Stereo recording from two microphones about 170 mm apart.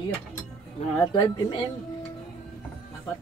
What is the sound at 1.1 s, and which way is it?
Speech, 25° left (ahead or behind).